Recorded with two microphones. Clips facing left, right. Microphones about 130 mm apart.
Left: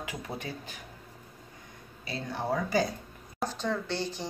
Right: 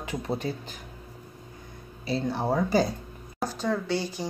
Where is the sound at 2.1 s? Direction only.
30° right (ahead or behind).